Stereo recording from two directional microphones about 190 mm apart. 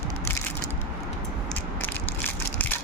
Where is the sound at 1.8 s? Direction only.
10° left (ahead or behind).